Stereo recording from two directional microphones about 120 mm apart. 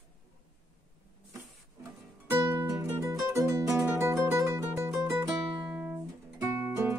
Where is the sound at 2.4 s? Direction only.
35° right (ahead or behind).